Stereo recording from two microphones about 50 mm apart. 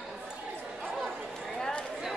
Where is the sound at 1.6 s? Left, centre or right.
Centre.